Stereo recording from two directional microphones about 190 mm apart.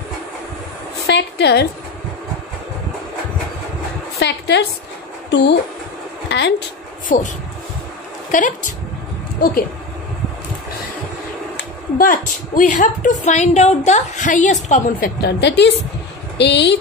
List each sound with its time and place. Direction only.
1.0 s a woman's voice: 60° left (ahead or behind)
4.2 s a woman's voice: 60° left (ahead or behind)
6.2 s a sound: 65° left (ahead or behind)
7.1 s speech: 45° left (ahead or behind)
8.3 s a woman's voice: 45° left (ahead or behind)
12.0 s a woman's voice: 45° left (ahead or behind)
15.2 s a woman's voice: 65° left (ahead or behind)